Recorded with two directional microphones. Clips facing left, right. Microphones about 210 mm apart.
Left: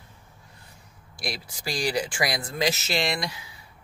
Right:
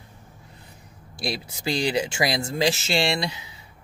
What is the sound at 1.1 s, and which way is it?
Speech, 25° right (ahead or behind).